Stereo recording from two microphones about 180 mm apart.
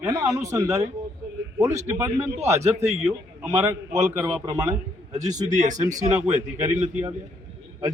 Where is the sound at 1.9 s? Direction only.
15° right (ahead or behind).